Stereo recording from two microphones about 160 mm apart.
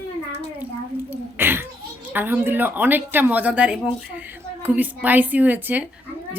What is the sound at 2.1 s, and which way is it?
Speech, 15° right (ahead or behind).